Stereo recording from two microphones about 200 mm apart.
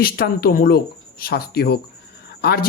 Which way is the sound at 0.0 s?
50° left (ahead or behind).